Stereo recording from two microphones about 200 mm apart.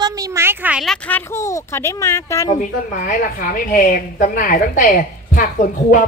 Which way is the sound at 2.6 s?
40° left (ahead or behind).